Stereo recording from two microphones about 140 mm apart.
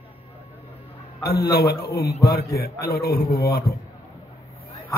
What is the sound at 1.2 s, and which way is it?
Speech, 90° left.